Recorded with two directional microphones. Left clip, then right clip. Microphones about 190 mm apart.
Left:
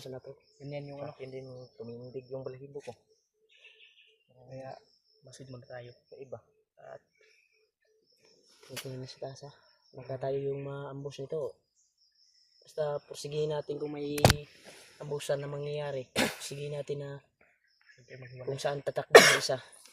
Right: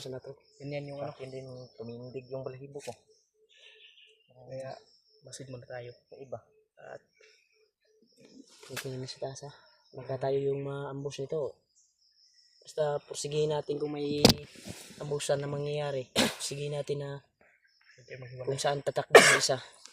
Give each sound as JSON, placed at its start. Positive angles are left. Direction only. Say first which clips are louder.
{"t": 0.6, "sound": "speech", "louder": "right 3 dB", "side_deg": -60}
{"t": 1.2, "sound": "speech", "louder": "right 1 dB", "side_deg": -20}
{"t": 2.7, "sound": "speech", "louder": "right 2 dB", "side_deg": -60}
{"t": 4.4, "sound": "speech", "louder": "right 4 dB", "side_deg": -60}
{"t": 6.1, "sound": "speech", "louder": "right 2 dB", "side_deg": -15}
{"t": 6.7, "sound": "burping", "louder": "right 2 dB", "side_deg": -65}
{"t": 8.6, "sound": "speech", "louder": "right 3 dB", "side_deg": -30}
{"t": 12.6, "sound": "speech", "louder": "right 3 dB", "side_deg": -35}
{"t": 14.9, "sound": "speech", "louder": "right 2 dB", "side_deg": -35}
{"t": 16.1, "sound": "speech", "louder": "right 2 dB", "side_deg": 0}
{"t": 16.5, "sound": "speech", "louder": "right 3 dB", "side_deg": -40}
{"t": 19.1, "sound": "speech", "louder": "left 1 dB", "side_deg": -5}
{"t": 19.5, "sound": "speech", "louder": "right 2 dB", "side_deg": -40}